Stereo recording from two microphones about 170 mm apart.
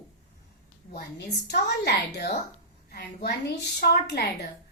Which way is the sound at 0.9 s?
80° left.